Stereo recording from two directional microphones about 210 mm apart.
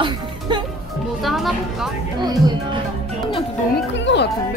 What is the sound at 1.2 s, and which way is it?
Speech, centre (ahead or behind).